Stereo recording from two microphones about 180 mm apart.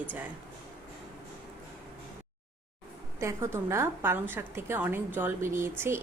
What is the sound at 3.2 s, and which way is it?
A woman's voice, 15° right (ahead or behind).